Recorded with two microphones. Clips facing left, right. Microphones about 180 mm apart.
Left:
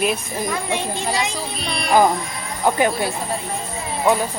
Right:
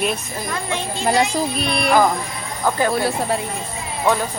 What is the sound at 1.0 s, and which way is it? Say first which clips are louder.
Speech: right 6 dB; 60° right (ahead or behind).